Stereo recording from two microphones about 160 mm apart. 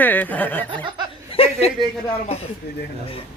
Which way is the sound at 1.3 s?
35° left (ahead or behind).